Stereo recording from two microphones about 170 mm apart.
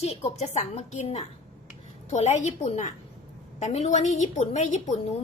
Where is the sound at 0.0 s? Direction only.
40° left (ahead or behind).